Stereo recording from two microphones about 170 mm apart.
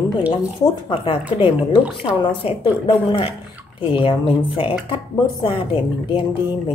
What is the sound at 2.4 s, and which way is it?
Speech, 35° left (ahead or behind).